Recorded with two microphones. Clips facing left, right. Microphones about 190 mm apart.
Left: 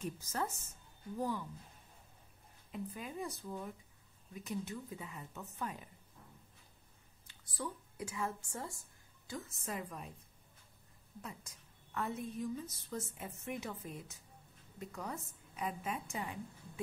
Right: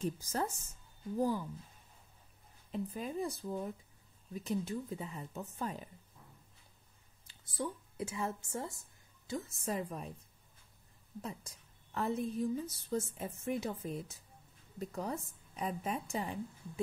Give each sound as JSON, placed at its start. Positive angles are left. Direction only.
{"t": 0.0, "sound": "a woman's voice", "side_deg": -30}
{"t": 2.7, "sound": "a woman's voice", "side_deg": -30}
{"t": 7.2, "sound": "a woman's voice", "side_deg": -25}
{"t": 11.1, "sound": "a woman's voice", "side_deg": -30}